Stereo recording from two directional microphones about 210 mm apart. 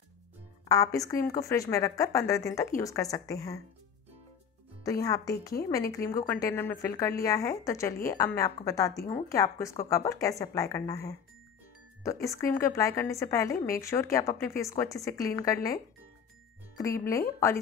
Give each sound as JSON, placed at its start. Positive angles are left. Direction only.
{"t": 0.7, "sound": "a woman's voice", "side_deg": 15}
{"t": 4.8, "sound": "a woman's voice", "side_deg": 15}